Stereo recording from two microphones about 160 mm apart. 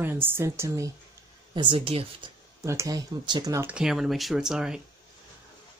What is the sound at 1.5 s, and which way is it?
Speech, 30° right (ahead or behind).